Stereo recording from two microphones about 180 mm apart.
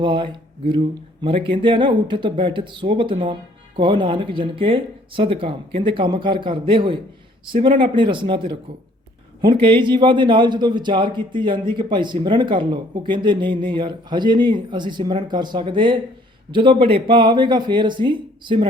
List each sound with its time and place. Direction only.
0.0 s a man's voice: 25° right (ahead or behind)